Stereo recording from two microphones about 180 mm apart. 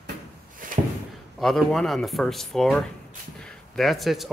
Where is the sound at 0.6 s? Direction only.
50° right (ahead or behind).